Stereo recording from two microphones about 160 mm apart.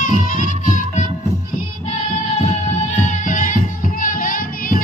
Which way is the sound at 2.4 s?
45° left (ahead or behind).